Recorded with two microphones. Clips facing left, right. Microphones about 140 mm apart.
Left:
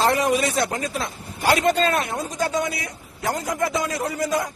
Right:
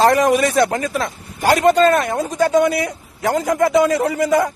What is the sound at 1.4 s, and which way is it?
A man's voice, 50° right (ahead or behind).